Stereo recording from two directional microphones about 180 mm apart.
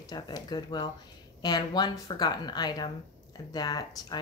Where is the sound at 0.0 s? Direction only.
20° left (ahead or behind).